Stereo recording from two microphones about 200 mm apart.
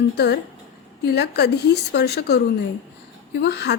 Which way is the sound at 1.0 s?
55° left (ahead or behind).